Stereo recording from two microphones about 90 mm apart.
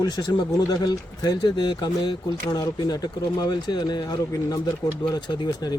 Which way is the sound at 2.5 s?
40° left (ahead or behind).